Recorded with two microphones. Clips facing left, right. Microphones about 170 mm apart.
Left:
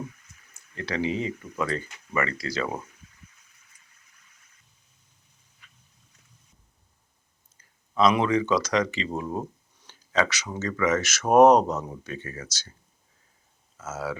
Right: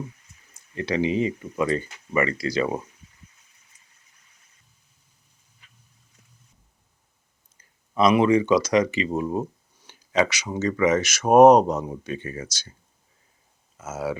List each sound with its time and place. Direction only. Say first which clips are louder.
0.8 s speech: right 5 dB; 20° right (ahead or behind)
7.9 s speech: right 4 dB; 15° right (ahead or behind)
13.7 s speech: right 3 dB; 15° right (ahead or behind)